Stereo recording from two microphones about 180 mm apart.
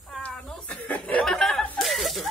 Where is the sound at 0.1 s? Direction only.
5° left (ahead or behind).